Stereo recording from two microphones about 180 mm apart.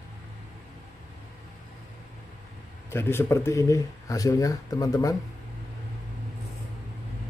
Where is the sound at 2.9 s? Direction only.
15° left (ahead or behind).